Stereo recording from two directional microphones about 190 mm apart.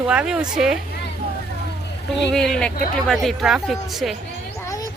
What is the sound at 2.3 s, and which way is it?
Speech, centre (ahead or behind).